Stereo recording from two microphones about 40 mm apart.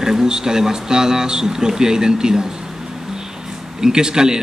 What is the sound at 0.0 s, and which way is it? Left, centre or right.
Speech, centre.